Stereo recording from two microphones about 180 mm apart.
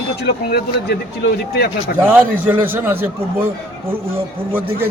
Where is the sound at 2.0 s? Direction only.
10° right (ahead or behind).